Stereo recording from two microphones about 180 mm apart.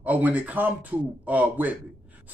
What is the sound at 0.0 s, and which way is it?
A man's voice, 10° right (ahead or behind).